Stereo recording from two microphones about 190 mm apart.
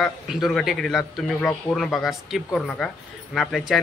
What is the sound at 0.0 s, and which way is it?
Speech, centre (ahead or behind).